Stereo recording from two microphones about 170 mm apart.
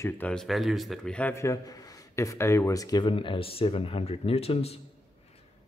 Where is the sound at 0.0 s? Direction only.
5° left (ahead or behind); by 4.7 s 35° left (ahead or behind).